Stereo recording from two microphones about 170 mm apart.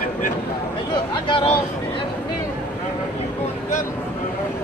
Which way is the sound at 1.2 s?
30° left (ahead or behind).